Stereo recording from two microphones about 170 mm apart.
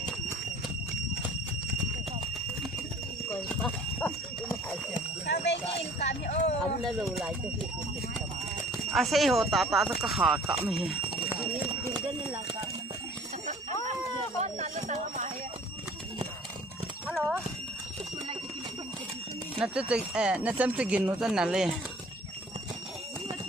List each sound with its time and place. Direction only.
3.5 s horse: 10° left (ahead or behind)
5.2 s speech: 85° left
6.6 s speech: centre (ahead or behind)
8.9 s speech: centre (ahead or behind)
14.4 s a sound: 45° right (ahead or behind)
17.1 s speech: 5° right (ahead or behind)
19.5 s speech: 5° right (ahead or behind)